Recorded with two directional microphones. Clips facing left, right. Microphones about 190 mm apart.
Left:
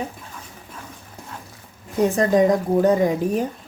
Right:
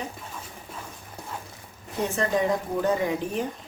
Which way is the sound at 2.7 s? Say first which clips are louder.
Left 7 dB; 40° left (ahead or behind).